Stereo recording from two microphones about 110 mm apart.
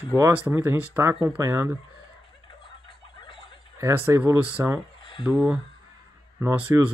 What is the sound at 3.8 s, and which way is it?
Speech, 25° right (ahead or behind).